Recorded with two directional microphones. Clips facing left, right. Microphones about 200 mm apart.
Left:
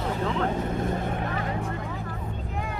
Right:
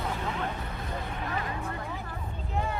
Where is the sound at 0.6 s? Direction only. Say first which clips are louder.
Left 9 dB; 45° left (ahead or behind).